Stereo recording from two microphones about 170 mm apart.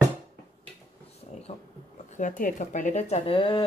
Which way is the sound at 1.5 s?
40° left (ahead or behind).